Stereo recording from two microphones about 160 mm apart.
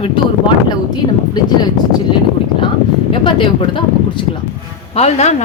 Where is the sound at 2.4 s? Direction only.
35° left (ahead or behind).